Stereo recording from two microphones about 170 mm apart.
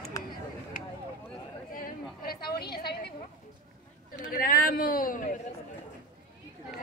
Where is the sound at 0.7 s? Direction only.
55° left (ahead or behind).